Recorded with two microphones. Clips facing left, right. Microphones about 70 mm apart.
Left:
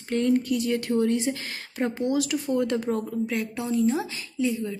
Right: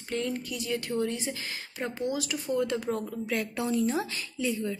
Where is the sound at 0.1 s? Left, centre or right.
Left.